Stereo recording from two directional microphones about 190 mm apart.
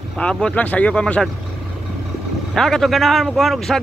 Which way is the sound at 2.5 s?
Centre (ahead or behind).